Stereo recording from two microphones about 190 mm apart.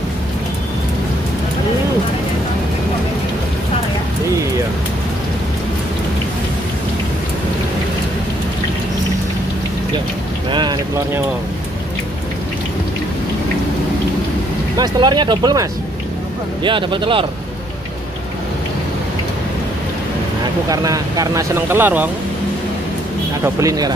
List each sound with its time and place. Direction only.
10.5 s boat: 25° right (ahead or behind)
14.8 s speech: 25° right (ahead or behind)
20.6 s speech: 20° right (ahead or behind)
23.4 s speech: 15° right (ahead or behind)